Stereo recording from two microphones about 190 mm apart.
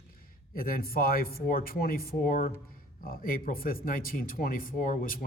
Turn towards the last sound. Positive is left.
turn(degrees=50)  # may be behind; listen again after turning